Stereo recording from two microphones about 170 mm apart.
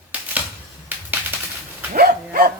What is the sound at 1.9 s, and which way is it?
Dog, 60° right (ahead or behind).